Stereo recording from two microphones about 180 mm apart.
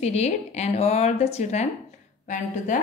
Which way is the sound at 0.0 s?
35° left (ahead or behind).